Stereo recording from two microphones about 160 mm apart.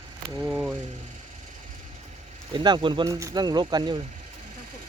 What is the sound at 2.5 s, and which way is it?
Speech, 30° right (ahead or behind).